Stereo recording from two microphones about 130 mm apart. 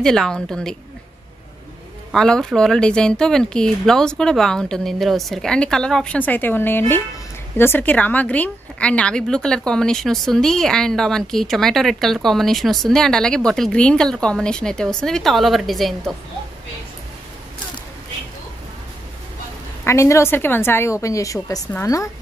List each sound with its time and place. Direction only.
0.0 s a woman's voice: 5° left (ahead or behind)
2.1 s a woman's voice: 5° left (ahead or behind)
19.8 s a woman's voice: 20° left (ahead or behind)